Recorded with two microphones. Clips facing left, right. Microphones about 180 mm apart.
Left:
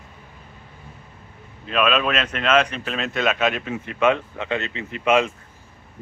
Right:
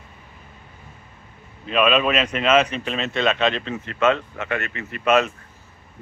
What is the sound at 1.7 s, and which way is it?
Speech, centre (ahead or behind).